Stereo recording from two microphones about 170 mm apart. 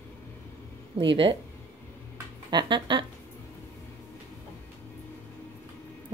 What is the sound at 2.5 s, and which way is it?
Speech, 30° right (ahead or behind).